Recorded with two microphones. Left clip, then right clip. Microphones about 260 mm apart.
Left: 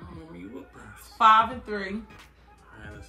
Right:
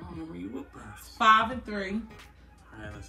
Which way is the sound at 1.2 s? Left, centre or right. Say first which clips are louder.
Left 3 dB; centre.